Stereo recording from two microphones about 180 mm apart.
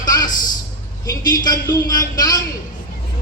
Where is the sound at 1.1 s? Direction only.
20° left (ahead or behind).